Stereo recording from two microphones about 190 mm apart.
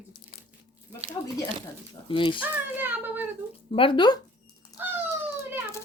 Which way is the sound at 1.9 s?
25° left (ahead or behind).